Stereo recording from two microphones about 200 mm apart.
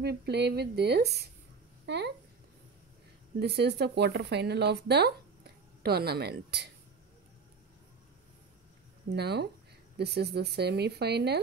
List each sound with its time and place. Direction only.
0.0 s a woman's voice: 55° right (ahead or behind)
3.3 s speech: 55° right (ahead or behind)
9.1 s speech: 55° right (ahead or behind)